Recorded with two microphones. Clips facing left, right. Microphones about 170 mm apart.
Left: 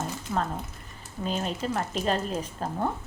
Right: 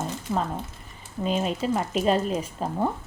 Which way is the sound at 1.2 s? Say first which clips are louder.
Right 4 dB; 5° right (ahead or behind).